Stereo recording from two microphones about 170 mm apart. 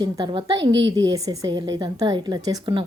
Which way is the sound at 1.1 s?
20° right (ahead or behind).